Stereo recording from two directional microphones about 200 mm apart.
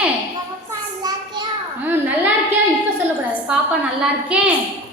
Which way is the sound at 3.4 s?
5° right (ahead or behind).